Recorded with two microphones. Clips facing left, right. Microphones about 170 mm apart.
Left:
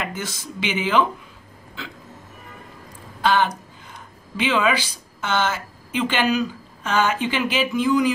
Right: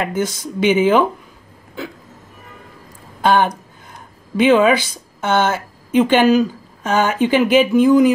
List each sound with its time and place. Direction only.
0.0 s speech: 50° right (ahead or behind)
3.2 s a woman's voice: 50° right (ahead or behind)